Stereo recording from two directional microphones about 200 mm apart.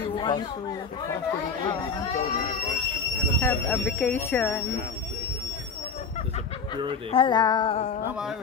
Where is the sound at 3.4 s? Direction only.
10° left (ahead or behind).